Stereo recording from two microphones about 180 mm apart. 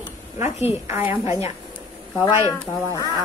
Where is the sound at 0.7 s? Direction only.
15° right (ahead or behind).